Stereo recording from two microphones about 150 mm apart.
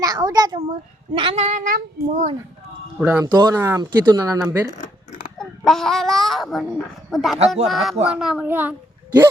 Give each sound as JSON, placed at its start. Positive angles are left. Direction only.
{"t": 0.0, "sound": "speech", "side_deg": -25}
{"t": 0.7, "sound": "speech", "side_deg": -35}
{"t": 1.5, "sound": "child singing", "side_deg": -60}
{"t": 3.0, "sound": "a child's voice", "side_deg": -10}
{"t": 3.3, "sound": "speech", "side_deg": -25}
{"t": 4.8, "sound": "a sound", "side_deg": 70}
{"t": 5.4, "sound": "a child's voice", "side_deg": 5}